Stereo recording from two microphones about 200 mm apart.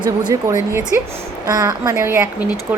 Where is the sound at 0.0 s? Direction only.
20° right (ahead or behind).